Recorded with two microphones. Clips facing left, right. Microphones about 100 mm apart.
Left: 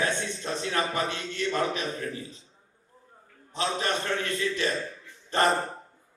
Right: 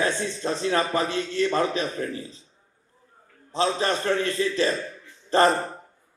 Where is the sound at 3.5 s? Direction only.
30° right (ahead or behind).